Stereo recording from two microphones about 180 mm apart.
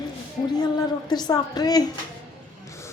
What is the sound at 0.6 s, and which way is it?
A woman's voice, 20° left (ahead or behind).